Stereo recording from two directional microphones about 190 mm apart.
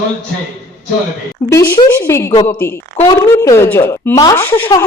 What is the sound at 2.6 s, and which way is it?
A woman's voice, 10° left (ahead or behind).